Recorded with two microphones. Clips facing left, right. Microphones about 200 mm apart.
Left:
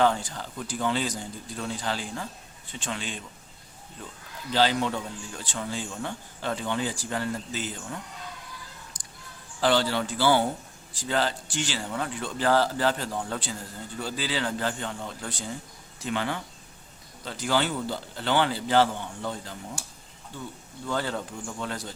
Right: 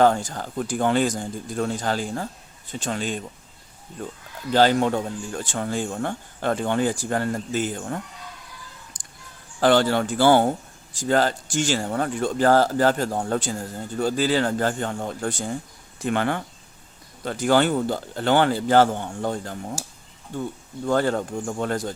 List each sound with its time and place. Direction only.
0.0 s speech: 45° right (ahead or behind)
8.9 s a sound: 50° right (ahead or behind)
9.6 s speech: 50° right (ahead or behind)